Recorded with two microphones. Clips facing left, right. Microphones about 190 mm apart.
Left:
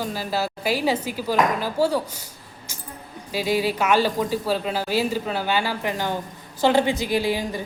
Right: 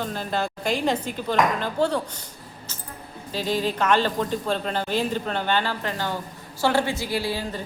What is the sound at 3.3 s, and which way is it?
A woman's voice, 10° left (ahead or behind).